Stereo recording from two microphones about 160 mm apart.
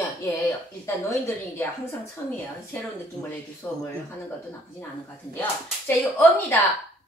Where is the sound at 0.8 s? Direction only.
20° left (ahead or behind).